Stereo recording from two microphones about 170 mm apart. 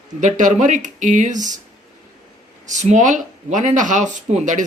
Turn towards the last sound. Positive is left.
turn(degrees=-45)  # may be behind; listen again after turning